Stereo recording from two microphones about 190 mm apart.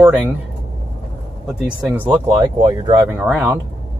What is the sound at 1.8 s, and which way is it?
Speech, 10° right (ahead or behind).